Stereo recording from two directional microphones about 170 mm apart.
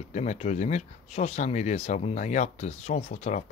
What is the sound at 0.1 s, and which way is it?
Speech, 40° left (ahead or behind).